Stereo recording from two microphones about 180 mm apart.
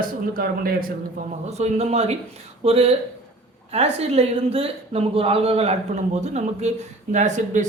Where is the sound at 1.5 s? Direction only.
40° right (ahead or behind).